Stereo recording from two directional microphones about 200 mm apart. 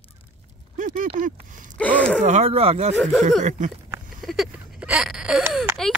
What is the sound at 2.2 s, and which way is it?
Speech, 35° right (ahead or behind).